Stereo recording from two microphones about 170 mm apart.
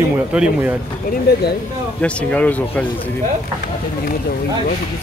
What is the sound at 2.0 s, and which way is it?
Speech, 5° left (ahead or behind).